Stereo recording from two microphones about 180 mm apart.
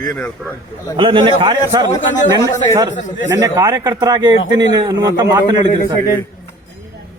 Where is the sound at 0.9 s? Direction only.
30° right (ahead or behind).